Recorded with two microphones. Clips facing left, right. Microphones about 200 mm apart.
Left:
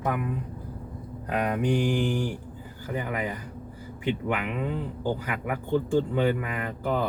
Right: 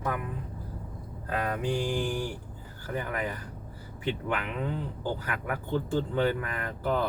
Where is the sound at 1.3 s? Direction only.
15° left (ahead or behind).